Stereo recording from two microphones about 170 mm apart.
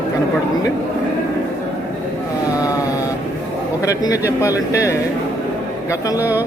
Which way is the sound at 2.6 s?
20° left (ahead or behind).